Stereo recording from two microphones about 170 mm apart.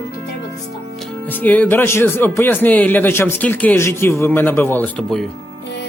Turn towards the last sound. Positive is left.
turn(degrees=10)  # may be behind; listen again after turning